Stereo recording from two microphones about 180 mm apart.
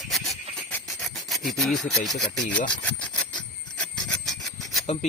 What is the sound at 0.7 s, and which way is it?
Rub, centre (ahead or behind).